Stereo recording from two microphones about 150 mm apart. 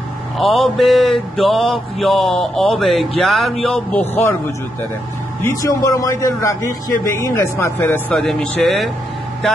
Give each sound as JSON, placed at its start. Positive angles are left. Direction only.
{"t": 0.4, "sound": "mantra", "side_deg": 0}
{"t": 4.1, "sound": "speech", "side_deg": 15}
{"t": 5.4, "sound": "a man's voice", "side_deg": 20}
{"t": 8.2, "sound": "mantra", "side_deg": 5}